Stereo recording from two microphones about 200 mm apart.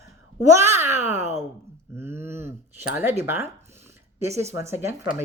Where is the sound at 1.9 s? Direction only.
10° right (ahead or behind).